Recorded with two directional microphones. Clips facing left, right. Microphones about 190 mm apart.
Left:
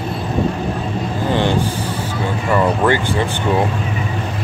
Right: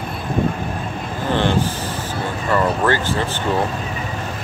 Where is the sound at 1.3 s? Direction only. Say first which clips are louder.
Left 1 dB; 15° left (ahead or behind).